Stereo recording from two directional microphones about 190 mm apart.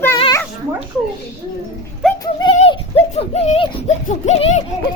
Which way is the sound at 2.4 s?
30° left (ahead or behind).